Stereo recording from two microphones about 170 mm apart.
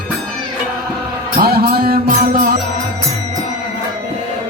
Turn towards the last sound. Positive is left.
turn(degrees=-55)  # may be behind; listen again after turning